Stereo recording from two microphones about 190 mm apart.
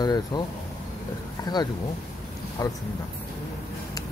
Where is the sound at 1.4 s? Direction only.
20° left (ahead or behind).